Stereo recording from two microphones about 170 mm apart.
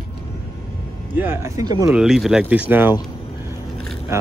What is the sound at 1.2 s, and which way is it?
Speech, 15° right (ahead or behind).